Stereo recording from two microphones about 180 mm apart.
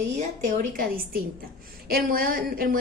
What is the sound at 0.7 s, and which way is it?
A woman's voice, 55° right (ahead or behind).